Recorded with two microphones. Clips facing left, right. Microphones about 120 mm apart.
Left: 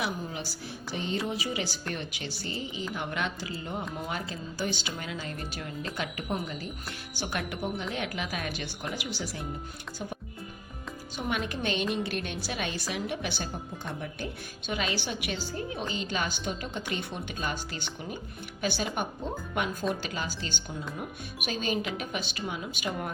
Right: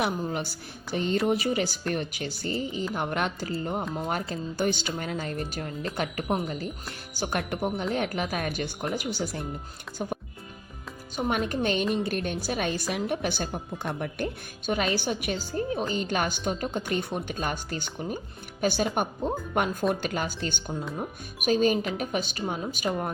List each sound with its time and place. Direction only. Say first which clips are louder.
0.0 s speech: right 5 dB; 55° right (ahead or behind)
11.3 s speech: right 4 dB; 45° right (ahead or behind)
14.7 s speech: right 5 dB; 45° right (ahead or behind)